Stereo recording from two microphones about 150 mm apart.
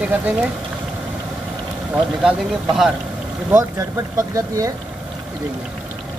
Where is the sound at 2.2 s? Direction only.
5° right (ahead or behind).